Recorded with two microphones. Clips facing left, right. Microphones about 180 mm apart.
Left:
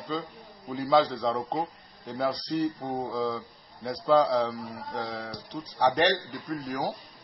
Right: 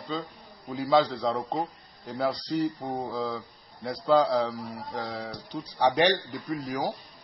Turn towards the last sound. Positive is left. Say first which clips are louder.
# right 1 dB
turn(degrees=0)  # may be behind; listen again after turning